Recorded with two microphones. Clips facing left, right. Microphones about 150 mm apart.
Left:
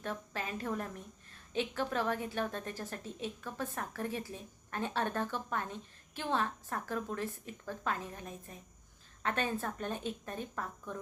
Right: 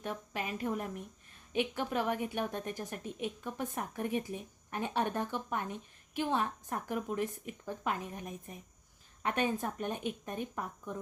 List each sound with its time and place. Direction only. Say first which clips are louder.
0.0 s a woman's voice: right 1 dB; 15° right (ahead or behind)